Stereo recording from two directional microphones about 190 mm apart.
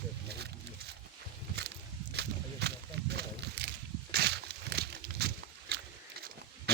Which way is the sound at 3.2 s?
60° right (ahead or behind).